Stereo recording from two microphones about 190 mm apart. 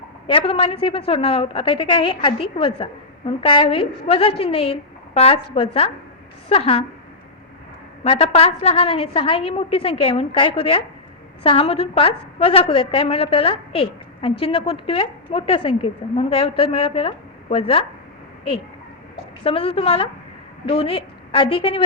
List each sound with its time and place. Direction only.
0.3 s a woman's voice: 30° left (ahead or behind)
8.0 s a woman's voice: 30° left (ahead or behind)
19.5 s a woman's voice: 30° left (ahead or behind)